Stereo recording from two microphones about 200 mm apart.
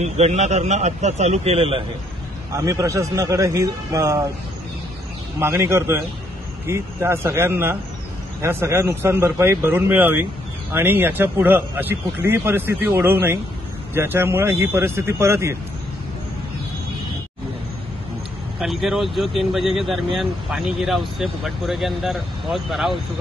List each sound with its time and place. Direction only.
0.0 s a man's voice: 35° right (ahead or behind)
2.5 s speech: 15° right (ahead or behind)
5.4 s speech: 15° right (ahead or behind)
18.6 s speech: centre (ahead or behind)